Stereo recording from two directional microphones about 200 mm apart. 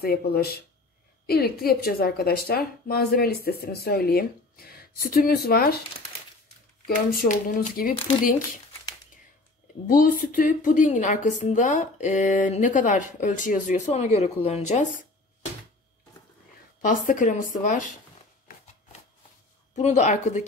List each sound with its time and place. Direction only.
0.0 s a woman's voice: 50° left (ahead or behind)
7.1 s a woman's voice: 45° left (ahead or behind)
9.8 s a woman's voice: 45° left (ahead or behind)
16.8 s a woman's voice: 40° left (ahead or behind)
18.5 s a sound: 45° left (ahead or behind)
19.7 s a woman's voice: 35° left (ahead or behind)